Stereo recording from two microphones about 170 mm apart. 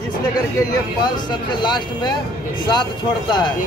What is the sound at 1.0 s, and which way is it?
Speech, 25° left (ahead or behind).